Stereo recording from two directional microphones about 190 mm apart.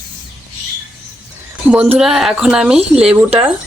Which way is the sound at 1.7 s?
5° right (ahead or behind).